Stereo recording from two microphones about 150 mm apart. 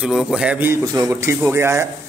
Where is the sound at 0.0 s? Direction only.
5° right (ahead or behind).